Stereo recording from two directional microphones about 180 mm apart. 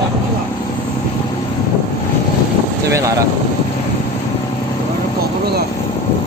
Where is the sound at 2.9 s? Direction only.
20° right (ahead or behind).